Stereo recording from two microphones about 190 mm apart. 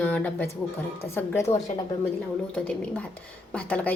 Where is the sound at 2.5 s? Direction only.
10° left (ahead or behind).